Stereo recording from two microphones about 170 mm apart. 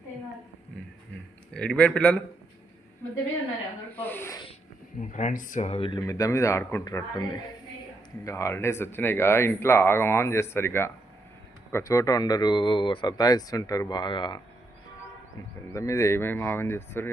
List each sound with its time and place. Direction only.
1.5 s speech: 10° left (ahead or behind)
3.9 s a sound: 10° left (ahead or behind)
4.9 s speech: 45° left (ahead or behind)
6.0 s a man's voice: 20° left (ahead or behind)
15.7 s speech: 20° left (ahead or behind)